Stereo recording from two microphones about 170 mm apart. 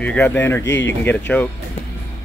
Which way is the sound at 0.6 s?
90° left.